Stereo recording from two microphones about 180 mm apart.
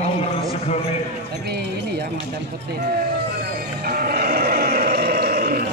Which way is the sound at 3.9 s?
55° right (ahead or behind).